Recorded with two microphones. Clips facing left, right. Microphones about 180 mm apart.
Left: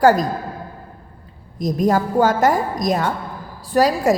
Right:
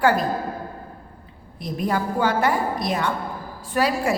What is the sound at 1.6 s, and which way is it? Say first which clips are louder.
A woman's voice: left 7 dB; 40° left (ahead or behind).